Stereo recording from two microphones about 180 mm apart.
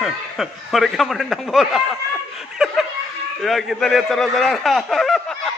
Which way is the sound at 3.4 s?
Centre (ahead or behind).